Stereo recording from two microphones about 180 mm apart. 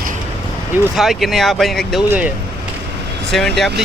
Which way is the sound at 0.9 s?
Centre (ahead or behind).